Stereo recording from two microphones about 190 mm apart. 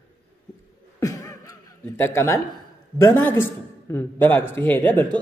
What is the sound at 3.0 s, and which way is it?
A man's voice, 15° left (ahead or behind).